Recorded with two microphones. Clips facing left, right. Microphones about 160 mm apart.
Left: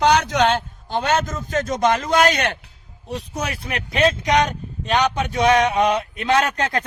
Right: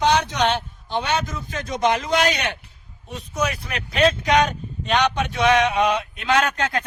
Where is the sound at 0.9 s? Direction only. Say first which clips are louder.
Left 3 dB; 45° left (ahead or behind).